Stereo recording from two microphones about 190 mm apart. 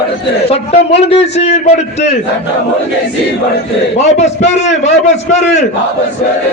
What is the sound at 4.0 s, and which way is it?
A man's voice, 35° left (ahead or behind).